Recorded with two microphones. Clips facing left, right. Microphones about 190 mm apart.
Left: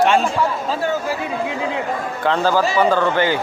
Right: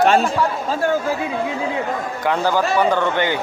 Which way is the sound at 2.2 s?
15° right (ahead or behind).